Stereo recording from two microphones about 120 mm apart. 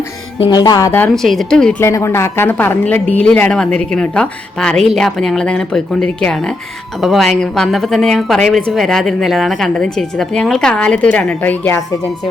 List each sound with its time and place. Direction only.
0.5 s speech: 35° left (ahead or behind)
0.9 s speech: 15° left (ahead or behind)
1.1 s a woman's voice: centre (ahead or behind)
1.8 s a woman's voice: 25° left (ahead or behind)